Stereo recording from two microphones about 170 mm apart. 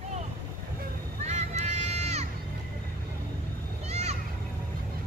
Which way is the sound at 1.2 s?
40° right (ahead or behind).